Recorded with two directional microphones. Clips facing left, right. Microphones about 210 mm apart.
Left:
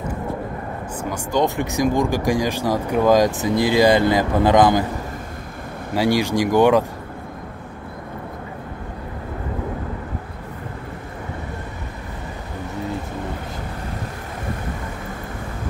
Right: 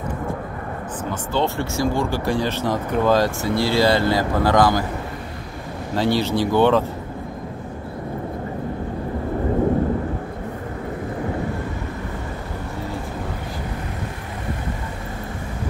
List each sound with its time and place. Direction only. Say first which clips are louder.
1.3 s speech: left 3 dB; 15° left (ahead or behind)
5.9 s speech: left 1 dB; 10° left (ahead or behind)